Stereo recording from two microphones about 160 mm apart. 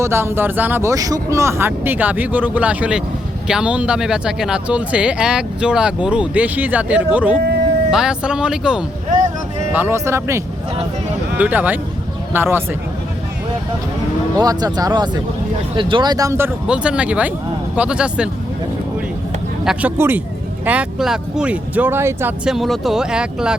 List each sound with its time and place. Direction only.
0.0 s speech: 15° right (ahead or behind)
14.3 s speech: 25° right (ahead or behind)
16.6 s speech: 5° right (ahead or behind)
19.6 s speech: 10° right (ahead or behind)
22.4 s speech: centre (ahead or behind)